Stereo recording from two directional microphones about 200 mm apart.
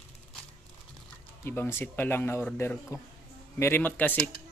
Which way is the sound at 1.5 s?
10° left (ahead or behind).